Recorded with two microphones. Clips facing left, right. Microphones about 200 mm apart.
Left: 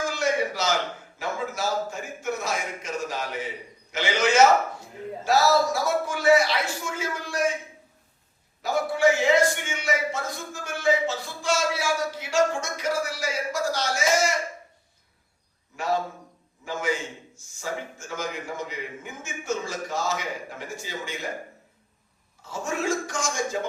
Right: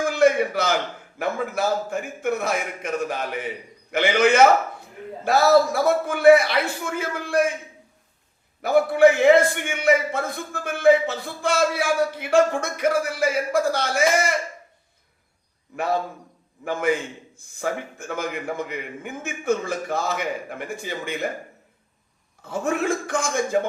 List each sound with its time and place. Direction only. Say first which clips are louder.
0.0 s a sound: right 7 dB; 55° right (ahead or behind)
1.2 s a man's voice: right 5 dB; 55° right (ahead or behind)
8.6 s a man's voice: right 6 dB; 55° right (ahead or behind)
15.7 s a man's voice: right 2 dB; 55° right (ahead or behind)
22.4 s a man's voice: right 6 dB; 55° right (ahead or behind)